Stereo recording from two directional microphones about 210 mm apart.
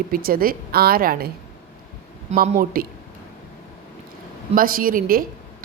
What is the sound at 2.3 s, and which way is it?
Speech, 40° right (ahead or behind).